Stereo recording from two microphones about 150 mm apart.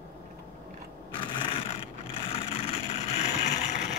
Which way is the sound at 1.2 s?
35° left (ahead or behind).